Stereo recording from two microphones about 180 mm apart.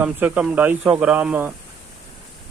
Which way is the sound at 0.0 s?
10° right (ahead or behind).